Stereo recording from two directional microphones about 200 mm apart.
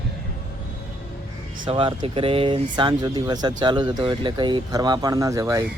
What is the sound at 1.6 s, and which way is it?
Speech, 25° right (ahead or behind).